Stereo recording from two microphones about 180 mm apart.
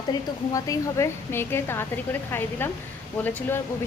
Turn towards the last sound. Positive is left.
turn(degrees=10)  # may be behind; listen again after turning